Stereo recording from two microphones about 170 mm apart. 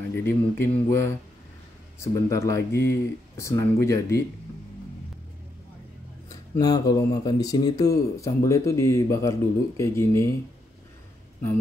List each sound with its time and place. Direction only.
0.1 s speech: 15° left (ahead or behind)
2.0 s speech: 20° left (ahead or behind)
6.2 s speech: 20° left (ahead or behind)